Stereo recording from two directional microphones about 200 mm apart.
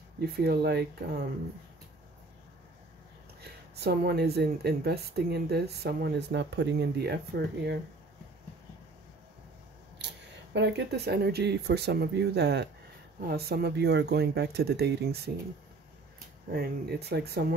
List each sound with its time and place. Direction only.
0.2 s speech: 50° right (ahead or behind)
3.7 s speech: 55° right (ahead or behind)
10.0 s speech: 60° right (ahead or behind)
16.5 s speech: 55° right (ahead or behind)